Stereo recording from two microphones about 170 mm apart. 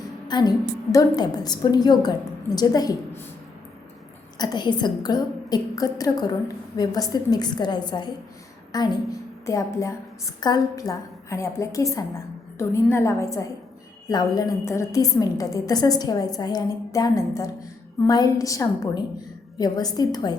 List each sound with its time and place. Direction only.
0.3 s a woman's voice: 25° left (ahead or behind)
4.4 s a woman's voice: 25° left (ahead or behind)